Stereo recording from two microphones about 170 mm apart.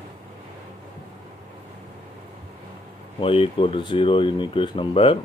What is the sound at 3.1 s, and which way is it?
Speech, 30° left (ahead or behind).